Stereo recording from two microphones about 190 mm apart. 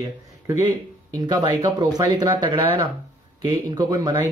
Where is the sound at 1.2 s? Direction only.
25° right (ahead or behind).